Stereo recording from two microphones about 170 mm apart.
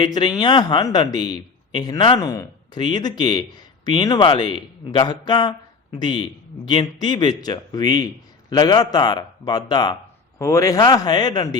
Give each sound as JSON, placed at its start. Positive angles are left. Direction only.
{"t": 0.0, "sound": "a man's voice", "side_deg": 25}